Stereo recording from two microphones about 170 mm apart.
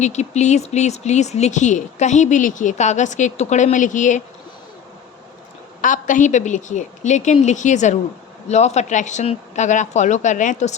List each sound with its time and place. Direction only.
0.0 s speech: 40° left (ahead or behind)
5.8 s speech: 50° left (ahead or behind)